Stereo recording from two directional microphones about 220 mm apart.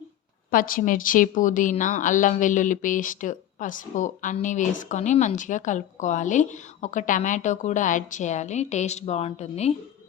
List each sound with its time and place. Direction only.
0.5 s a woman's voice: 40° left (ahead or behind)